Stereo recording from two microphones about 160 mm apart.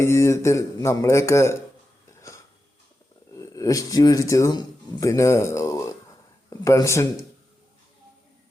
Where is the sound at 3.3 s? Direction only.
20° left (ahead or behind).